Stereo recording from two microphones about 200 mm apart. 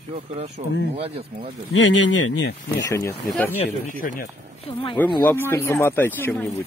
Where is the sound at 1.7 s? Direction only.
70° left (ahead or behind).